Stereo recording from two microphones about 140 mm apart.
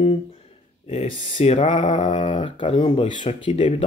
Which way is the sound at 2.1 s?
35° left (ahead or behind).